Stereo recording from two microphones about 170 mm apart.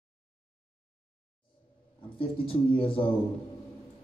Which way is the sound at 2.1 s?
30° left (ahead or behind).